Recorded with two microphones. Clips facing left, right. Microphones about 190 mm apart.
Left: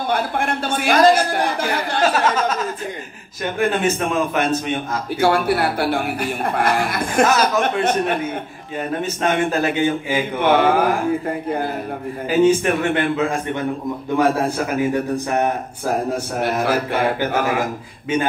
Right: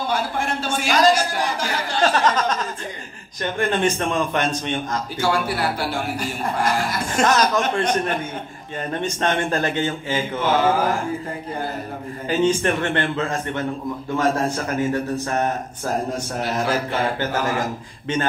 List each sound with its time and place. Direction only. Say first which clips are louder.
0.1 s speech: left 5 dB; 55° left (ahead or behind)
2.0 s a man's voice: left 1 dB; 5° left (ahead or behind)
5.2 s speech: left 5 dB; 60° left (ahead or behind)
7.2 s a man's voice: left 1 dB; 5° left (ahead or behind)
8.9 s a man's voice: left 2 dB; 5° left (ahead or behind)
10.4 s speech: left 4 dB; 60° left (ahead or behind)
12.3 s a man's voice: left 4 dB; 10° left (ahead or behind)
14.7 s a man's voice: left 2 dB; 10° left (ahead or behind)
16.3 s speech: left 3 dB; 60° left (ahead or behind)